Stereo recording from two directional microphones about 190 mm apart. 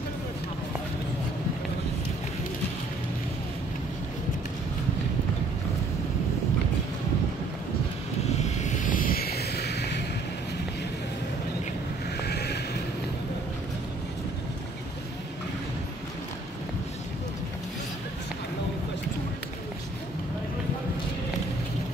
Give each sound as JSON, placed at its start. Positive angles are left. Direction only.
{"t": 8.4, "sound": "vehicle", "side_deg": 35}
{"t": 12.2, "sound": "vehicle", "side_deg": 60}